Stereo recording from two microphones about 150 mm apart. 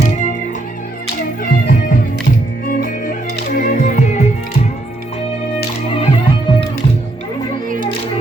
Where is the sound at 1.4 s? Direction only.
70° left (ahead or behind); by 4.2 s 50° left (ahead or behind).